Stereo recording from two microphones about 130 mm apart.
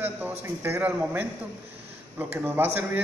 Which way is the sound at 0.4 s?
15° right (ahead or behind).